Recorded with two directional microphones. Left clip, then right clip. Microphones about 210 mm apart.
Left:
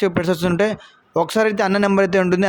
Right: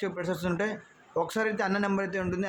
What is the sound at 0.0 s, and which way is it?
Speech, 45° left (ahead or behind).